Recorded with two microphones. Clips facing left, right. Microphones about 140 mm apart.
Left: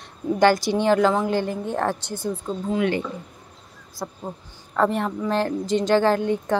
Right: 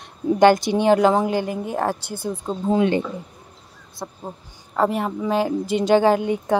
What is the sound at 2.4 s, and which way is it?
Speech, 30° right (ahead or behind).